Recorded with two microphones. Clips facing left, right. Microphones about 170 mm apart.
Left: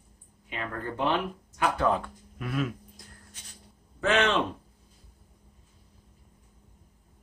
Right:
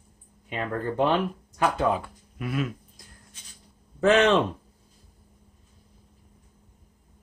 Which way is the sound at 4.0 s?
40° right (ahead or behind).